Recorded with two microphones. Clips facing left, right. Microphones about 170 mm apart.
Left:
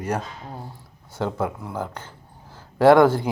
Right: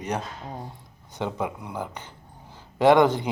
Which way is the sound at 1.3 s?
10° right (ahead or behind).